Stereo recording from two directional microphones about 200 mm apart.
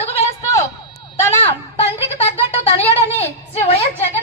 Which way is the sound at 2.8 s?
30° left (ahead or behind).